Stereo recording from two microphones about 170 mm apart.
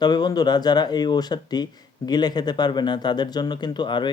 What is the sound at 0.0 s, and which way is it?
Speech, 25° left (ahead or behind).